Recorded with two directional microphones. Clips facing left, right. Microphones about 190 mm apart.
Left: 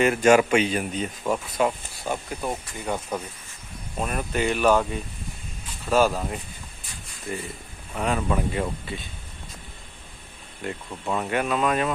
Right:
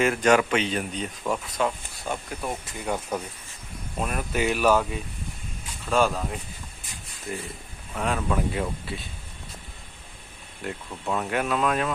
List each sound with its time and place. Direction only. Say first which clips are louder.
0.0 s speech: left 3 dB; 5° left (ahead or behind)
2.8 s speech: even; 5° right (ahead or behind)
10.6 s speech: left 1 dB; centre (ahead or behind)